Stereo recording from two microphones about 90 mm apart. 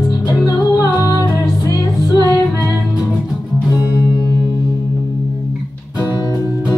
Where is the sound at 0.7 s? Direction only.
35° left (ahead or behind).